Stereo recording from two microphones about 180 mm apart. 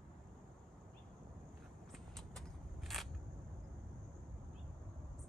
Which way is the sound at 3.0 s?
Centre (ahead or behind).